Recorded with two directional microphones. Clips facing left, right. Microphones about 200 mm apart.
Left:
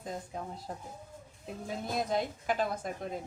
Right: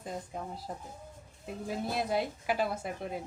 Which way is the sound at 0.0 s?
5° right (ahead or behind).